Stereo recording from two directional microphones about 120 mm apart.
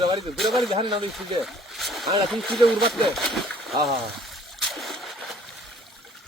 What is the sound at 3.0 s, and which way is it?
Splash, centre (ahead or behind).